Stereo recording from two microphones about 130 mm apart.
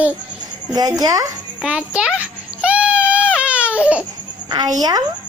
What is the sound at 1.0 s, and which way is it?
Speech, 25° right (ahead or behind).